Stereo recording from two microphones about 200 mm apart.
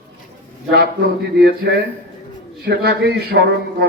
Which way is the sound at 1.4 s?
55° right (ahead or behind).